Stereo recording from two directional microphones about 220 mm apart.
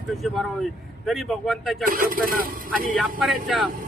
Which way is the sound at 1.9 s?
40° right (ahead or behind).